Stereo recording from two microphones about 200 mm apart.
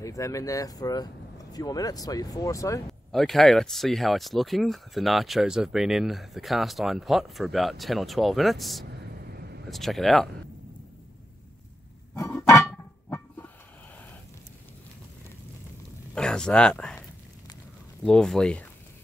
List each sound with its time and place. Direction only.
0.0 s speech: 15° left (ahead or behind)
3.1 s speech: centre (ahead or behind)
9.1 s vehicle: 55° right (ahead or behind)
9.7 s speech: centre (ahead or behind)
12.2 s music: 15° left (ahead or behind)
16.2 s speech: 5° left (ahead or behind)
18.0 s speech: 5° left (ahead or behind)